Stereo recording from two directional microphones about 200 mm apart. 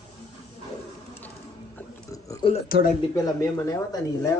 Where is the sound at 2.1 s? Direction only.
15° left (ahead or behind).